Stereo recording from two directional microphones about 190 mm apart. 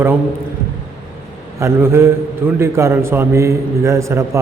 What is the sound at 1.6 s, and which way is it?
A man's voice, 15° right (ahead or behind).